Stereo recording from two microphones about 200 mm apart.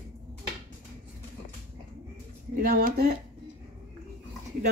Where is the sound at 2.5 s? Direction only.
45° right (ahead or behind).